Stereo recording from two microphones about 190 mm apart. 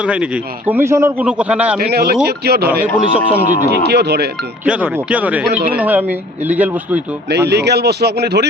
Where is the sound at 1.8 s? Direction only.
55° right (ahead or behind).